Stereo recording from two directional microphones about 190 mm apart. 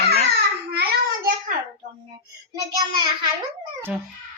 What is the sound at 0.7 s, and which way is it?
Child singing, 55° right (ahead or behind).